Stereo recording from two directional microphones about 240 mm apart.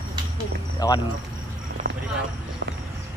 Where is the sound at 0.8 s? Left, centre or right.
Centre.